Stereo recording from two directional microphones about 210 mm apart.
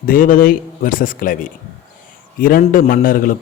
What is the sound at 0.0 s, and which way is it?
A man's voice, 40° left (ahead or behind).